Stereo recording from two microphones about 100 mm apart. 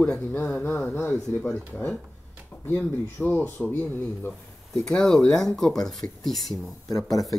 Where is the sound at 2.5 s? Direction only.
20° left (ahead or behind).